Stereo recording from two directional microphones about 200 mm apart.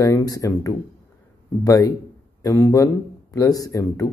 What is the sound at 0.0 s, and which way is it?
Speech, 15° left (ahead or behind).